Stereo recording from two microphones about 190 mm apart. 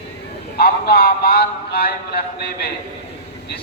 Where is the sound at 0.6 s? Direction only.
55° left (ahead or behind).